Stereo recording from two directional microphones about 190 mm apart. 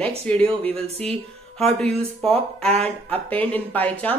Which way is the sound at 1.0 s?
Centre (ahead or behind).